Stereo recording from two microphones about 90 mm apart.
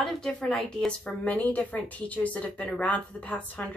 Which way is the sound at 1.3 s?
15° left (ahead or behind).